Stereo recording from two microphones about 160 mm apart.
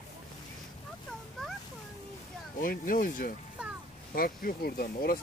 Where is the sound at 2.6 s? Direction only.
60° left (ahead or behind).